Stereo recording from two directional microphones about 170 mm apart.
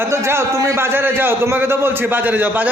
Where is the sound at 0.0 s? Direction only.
15° right (ahead or behind).